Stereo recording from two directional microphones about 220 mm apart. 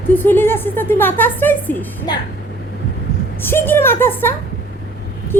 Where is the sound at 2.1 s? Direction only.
20° left (ahead or behind).